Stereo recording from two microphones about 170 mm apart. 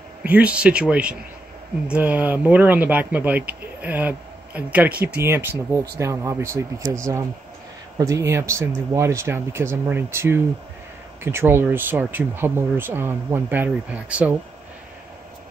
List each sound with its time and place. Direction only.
0.3 s speech: 5° right (ahead or behind)